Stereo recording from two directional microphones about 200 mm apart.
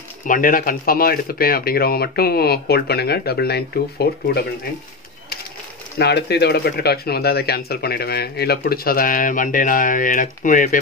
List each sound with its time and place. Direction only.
0.3 s speech: 45° left (ahead or behind)
5.9 s speech: 55° left (ahead or behind)